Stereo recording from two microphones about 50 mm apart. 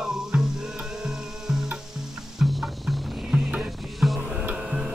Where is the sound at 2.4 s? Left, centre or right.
Centre.